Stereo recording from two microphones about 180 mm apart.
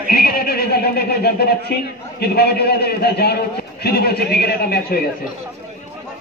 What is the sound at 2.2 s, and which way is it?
A man's voice, 60° left (ahead or behind).